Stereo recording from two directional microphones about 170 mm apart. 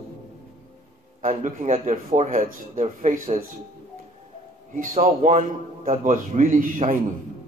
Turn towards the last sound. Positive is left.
turn(degrees=-50)  # may be behind; listen again after turning